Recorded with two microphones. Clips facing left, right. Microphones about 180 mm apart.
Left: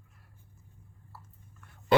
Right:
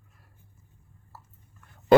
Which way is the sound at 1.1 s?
45° right (ahead or behind).